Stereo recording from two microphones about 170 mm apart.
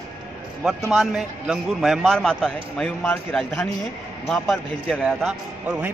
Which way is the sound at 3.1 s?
10° left (ahead or behind).